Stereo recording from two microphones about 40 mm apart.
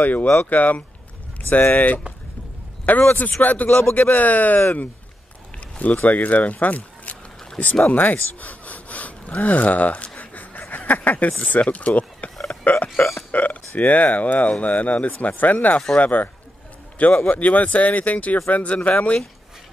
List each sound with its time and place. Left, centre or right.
0.0 s a man's voice: left
6.0 s speech: left
10.1 s a sound: left
11.6 s speech: left
12.4 s a sound: left
13.3 s speech: left